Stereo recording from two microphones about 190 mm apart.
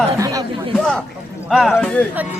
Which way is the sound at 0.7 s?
5° left (ahead or behind).